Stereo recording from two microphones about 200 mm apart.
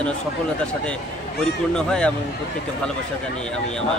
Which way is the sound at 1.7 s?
5° left (ahead or behind).